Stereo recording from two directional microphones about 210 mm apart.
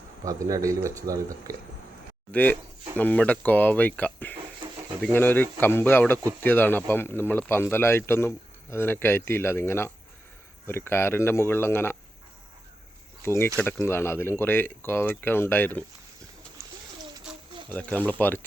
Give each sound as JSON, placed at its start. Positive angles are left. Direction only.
{"t": 0.3, "sound": "speech", "side_deg": -15}
{"t": 2.3, "sound": "speech", "side_deg": 5}
{"t": 13.2, "sound": "speech", "side_deg": 10}
{"t": 17.7, "sound": "speech", "side_deg": 10}